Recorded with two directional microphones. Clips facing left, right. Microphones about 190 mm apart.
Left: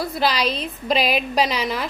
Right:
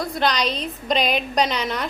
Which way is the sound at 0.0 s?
5° left (ahead or behind).